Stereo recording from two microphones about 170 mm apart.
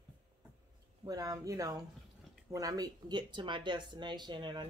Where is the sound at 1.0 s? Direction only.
20° right (ahead or behind).